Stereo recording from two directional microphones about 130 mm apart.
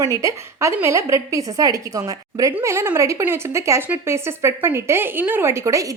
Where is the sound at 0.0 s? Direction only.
25° right (ahead or behind).